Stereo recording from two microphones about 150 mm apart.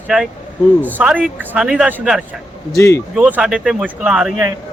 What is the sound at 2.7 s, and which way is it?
Speech, 20° left (ahead or behind).